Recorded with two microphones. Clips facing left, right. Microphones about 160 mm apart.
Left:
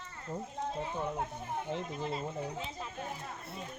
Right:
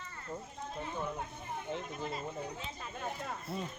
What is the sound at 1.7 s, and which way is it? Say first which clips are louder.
Speech: left 3 dB; 30° left (ahead or behind).